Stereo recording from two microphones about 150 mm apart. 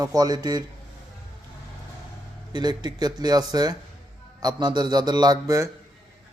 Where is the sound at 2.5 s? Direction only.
30° right (ahead or behind).